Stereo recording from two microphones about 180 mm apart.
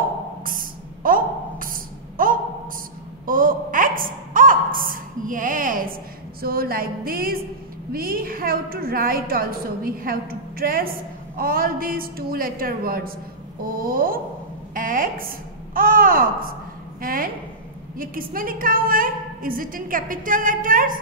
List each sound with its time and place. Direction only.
0.5 s a sound: 50° right (ahead or behind)
6.4 s music: 55° right (ahead or behind)
7.9 s a woman's voice: 55° right (ahead or behind)